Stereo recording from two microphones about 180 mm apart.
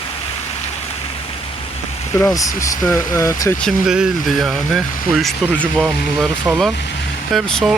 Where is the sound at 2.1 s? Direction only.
15° left (ahead or behind).